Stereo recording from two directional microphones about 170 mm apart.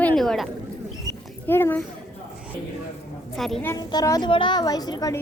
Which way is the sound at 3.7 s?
20° left (ahead or behind).